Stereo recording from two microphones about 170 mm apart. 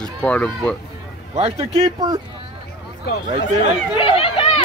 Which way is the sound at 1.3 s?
35° right (ahead or behind).